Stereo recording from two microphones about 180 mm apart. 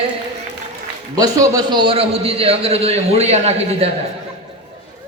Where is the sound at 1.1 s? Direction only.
20° right (ahead or behind).